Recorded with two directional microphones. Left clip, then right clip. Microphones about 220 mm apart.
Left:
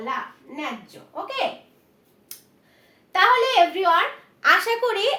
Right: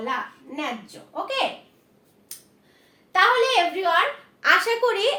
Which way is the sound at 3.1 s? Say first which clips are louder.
Left 1 dB; 35° left (ahead or behind).